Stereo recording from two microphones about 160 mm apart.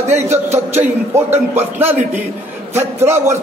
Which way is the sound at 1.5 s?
15° right (ahead or behind).